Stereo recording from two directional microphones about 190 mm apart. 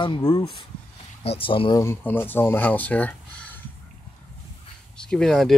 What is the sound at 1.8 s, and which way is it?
Speech, 10° left (ahead or behind).